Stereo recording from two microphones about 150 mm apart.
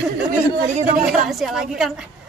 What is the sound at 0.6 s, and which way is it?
Speech, 55° right (ahead or behind).